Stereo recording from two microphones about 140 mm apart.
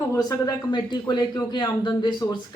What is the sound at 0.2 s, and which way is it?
A man's voice, 25° left (ahead or behind).